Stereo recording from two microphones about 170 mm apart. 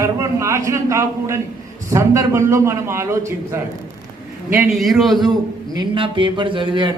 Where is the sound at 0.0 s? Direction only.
15° right (ahead or behind).